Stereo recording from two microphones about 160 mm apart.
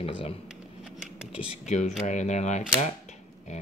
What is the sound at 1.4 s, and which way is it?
Speech, 35° left (ahead or behind).